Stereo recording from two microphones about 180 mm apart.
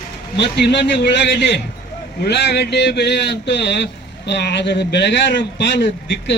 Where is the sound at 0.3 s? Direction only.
65° left (ahead or behind).